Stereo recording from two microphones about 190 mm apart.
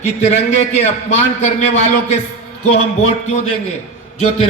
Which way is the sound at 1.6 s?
35° left (ahead or behind).